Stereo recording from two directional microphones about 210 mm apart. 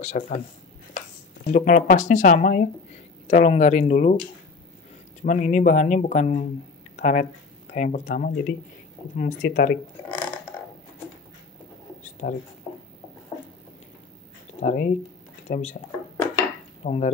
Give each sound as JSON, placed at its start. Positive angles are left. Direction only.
{"t": 0.0, "sound": "speech", "side_deg": 35}
{"t": 1.4, "sound": "speech", "side_deg": 40}
{"t": 5.2, "sound": "speech", "side_deg": 35}
{"t": 12.0, "sound": "a sound", "side_deg": 35}
{"t": 12.7, "sound": "a sound", "side_deg": 25}
{"t": 14.6, "sound": "speech", "side_deg": 35}
{"t": 16.8, "sound": "speech", "side_deg": 30}